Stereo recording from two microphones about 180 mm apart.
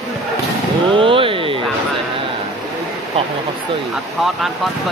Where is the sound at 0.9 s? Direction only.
30° right (ahead or behind).